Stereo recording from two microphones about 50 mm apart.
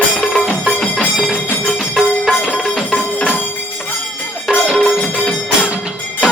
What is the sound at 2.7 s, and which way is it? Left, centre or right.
Music, left.